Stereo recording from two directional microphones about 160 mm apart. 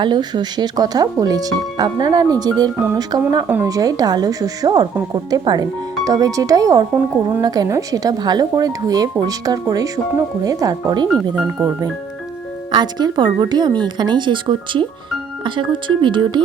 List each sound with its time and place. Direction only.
0.0 s speech: 25° right (ahead or behind)